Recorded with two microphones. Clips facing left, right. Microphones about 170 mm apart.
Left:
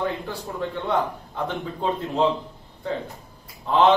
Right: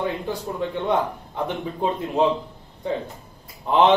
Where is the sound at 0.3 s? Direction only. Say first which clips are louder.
Right 3 dB; 20° right (ahead or behind).